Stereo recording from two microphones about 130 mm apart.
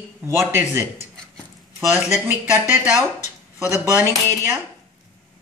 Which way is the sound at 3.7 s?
20° right (ahead or behind).